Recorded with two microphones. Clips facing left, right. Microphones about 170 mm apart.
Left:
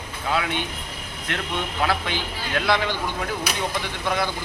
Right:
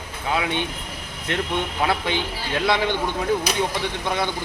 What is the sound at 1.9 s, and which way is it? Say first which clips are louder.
Speech: right 2 dB; 20° right (ahead or behind).